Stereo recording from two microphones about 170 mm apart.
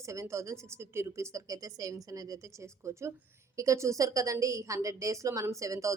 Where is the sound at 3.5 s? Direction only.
20° right (ahead or behind).